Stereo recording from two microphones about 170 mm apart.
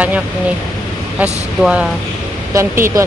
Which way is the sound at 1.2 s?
5° right (ahead or behind).